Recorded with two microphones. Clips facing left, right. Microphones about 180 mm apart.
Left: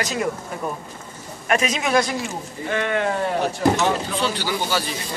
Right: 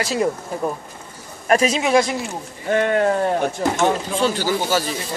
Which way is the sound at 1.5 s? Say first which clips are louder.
Right 4 dB; 30° right (ahead or behind).